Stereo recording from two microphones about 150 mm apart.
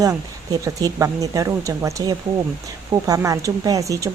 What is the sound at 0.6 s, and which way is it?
Speech, 20° right (ahead or behind).